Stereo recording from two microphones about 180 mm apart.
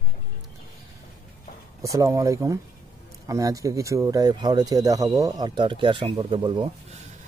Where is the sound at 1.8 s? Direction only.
15° right (ahead or behind).